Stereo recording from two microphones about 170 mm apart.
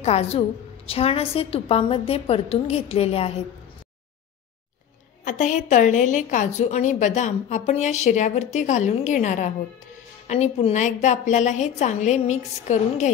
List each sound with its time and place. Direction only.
0.0 s a woman's voice: 40° left (ahead or behind)
5.2 s a woman's voice: 50° left (ahead or behind)